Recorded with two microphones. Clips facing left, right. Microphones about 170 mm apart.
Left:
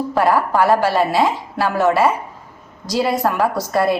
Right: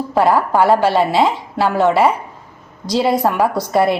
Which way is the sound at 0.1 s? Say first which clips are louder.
Right 3 dB; 25° right (ahead or behind).